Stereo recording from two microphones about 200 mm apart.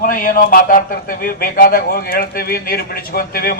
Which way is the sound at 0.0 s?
45° left (ahead or behind).